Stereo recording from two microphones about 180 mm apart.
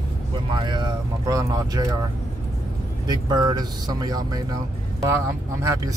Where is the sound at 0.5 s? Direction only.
25° right (ahead or behind).